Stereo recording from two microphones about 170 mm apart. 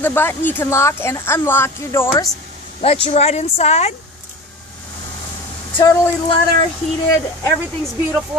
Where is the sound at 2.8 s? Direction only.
35° left (ahead or behind).